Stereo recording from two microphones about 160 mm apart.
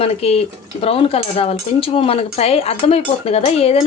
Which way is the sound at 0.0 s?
40° left (ahead or behind).